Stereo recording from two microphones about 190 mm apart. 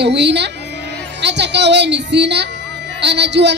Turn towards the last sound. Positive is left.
turn(degrees=-65)  # may be behind; listen again after turning